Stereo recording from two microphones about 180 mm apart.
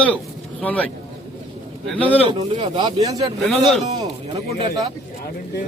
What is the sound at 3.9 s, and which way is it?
Speech, 30° right (ahead or behind).